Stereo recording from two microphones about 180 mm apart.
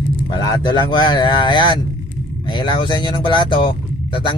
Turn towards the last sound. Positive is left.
turn(degrees=30)  # may be behind; listen again after turning